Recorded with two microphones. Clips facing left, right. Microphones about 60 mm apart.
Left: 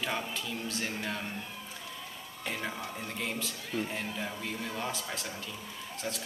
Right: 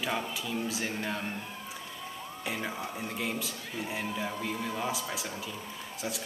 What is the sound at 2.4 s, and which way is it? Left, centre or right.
Speech, centre.